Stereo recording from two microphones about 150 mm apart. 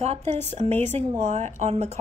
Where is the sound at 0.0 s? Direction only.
45° right (ahead or behind).